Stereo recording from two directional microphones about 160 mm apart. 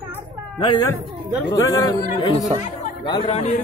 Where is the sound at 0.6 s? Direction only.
25° left (ahead or behind).